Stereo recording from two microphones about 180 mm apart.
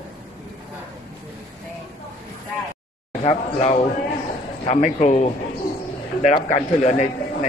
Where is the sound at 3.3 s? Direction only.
35° left (ahead or behind).